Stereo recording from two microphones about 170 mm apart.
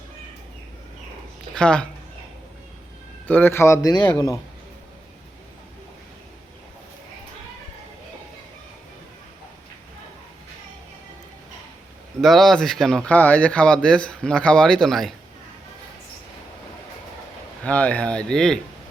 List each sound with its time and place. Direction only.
1.5 s speech: 5° left (ahead or behind)
3.2 s a man's voice: 10° left (ahead or behind)
12.2 s speech: centre (ahead or behind)
17.6 s speech: 10° left (ahead or behind)